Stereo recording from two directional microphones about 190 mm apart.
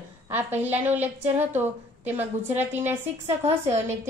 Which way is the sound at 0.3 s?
10° right (ahead or behind).